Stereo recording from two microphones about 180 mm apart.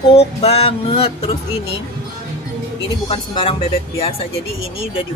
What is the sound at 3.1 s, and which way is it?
Speech, 30° left (ahead or behind).